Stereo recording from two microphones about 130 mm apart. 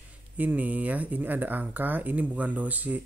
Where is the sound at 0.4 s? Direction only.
15° right (ahead or behind).